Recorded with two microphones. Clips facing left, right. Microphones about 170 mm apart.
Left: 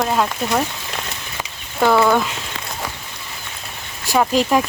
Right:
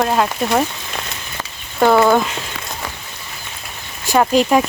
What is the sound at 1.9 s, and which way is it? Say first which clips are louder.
Speech: right 2 dB; 20° right (ahead or behind).